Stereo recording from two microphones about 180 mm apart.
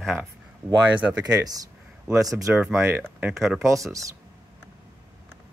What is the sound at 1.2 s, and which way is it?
Speech, 20° right (ahead or behind).